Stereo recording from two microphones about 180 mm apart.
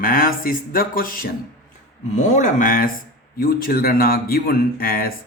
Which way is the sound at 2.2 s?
40° left (ahead or behind).